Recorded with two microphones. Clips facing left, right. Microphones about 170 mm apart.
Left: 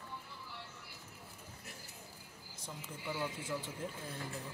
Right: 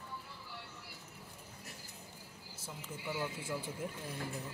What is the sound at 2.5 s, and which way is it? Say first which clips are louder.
Speech: right 1 dB; 5° right (ahead or behind).